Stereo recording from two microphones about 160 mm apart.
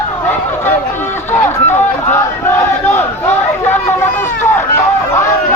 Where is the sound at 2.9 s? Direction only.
15° left (ahead or behind).